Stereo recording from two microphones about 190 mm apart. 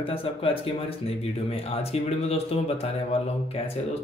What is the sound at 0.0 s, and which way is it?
Speech, 30° left (ahead or behind).